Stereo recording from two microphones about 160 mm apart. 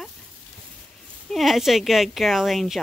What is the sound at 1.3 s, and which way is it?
Speech, centre (ahead or behind).